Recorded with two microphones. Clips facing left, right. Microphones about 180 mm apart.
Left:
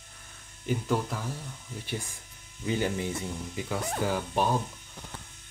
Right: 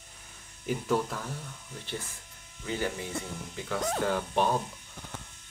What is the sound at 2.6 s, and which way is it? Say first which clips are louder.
Speech: left 4 dB; 20° left (ahead or behind).